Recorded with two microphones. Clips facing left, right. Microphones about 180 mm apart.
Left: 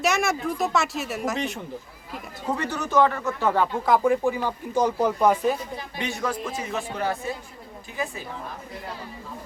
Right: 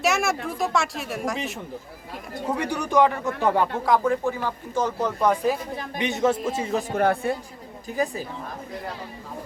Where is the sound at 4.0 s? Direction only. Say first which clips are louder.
Left 2 dB; 15° left (ahead or behind).